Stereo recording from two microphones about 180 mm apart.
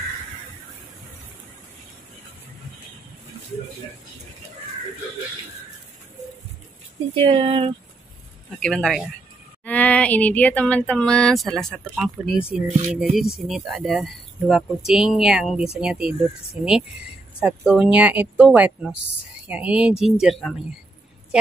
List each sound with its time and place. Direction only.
7.2 s speech: 30° right (ahead or behind)
8.5 s speech: 5° left (ahead or behind)